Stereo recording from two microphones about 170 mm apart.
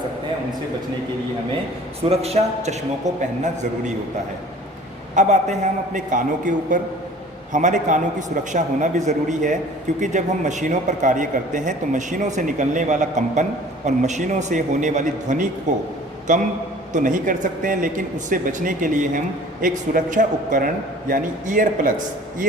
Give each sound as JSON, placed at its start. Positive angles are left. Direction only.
{"t": 2.0, "sound": "a man's voice", "side_deg": -35}
{"t": 5.1, "sound": "a man's voice", "side_deg": -45}